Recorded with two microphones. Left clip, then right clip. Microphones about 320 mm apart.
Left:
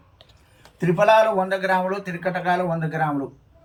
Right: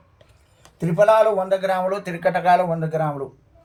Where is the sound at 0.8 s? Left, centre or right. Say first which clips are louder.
Right 1 dB; right.